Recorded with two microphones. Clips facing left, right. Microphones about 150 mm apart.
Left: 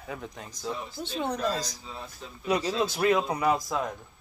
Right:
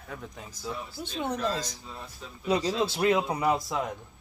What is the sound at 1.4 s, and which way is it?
Speech, 25° right (ahead or behind).